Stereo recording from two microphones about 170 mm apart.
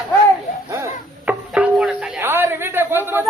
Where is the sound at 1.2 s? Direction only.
5° right (ahead or behind).